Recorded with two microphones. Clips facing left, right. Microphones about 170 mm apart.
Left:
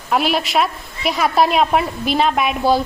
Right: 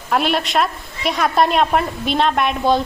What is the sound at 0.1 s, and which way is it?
A woman's voice, centre (ahead or behind).